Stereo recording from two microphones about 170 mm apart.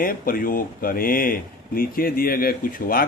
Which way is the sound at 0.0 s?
55° left (ahead or behind).